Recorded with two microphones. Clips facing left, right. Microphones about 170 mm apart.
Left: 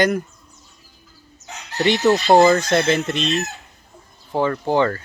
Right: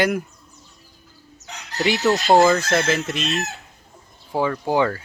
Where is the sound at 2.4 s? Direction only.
Centre (ahead or behind).